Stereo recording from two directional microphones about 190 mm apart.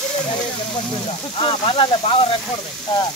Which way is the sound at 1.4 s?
30° left (ahead or behind).